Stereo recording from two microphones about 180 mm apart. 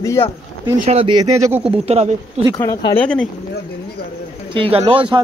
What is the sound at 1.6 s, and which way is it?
Speech, 35° right (ahead or behind).